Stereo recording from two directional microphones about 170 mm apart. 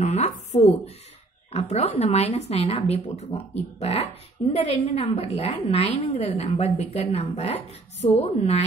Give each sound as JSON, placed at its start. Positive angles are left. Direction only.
{"t": 0.0, "sound": "a woman's voice", "side_deg": 40}